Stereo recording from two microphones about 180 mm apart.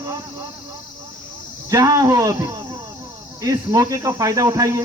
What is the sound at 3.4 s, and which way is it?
Speech, 20° right (ahead or behind).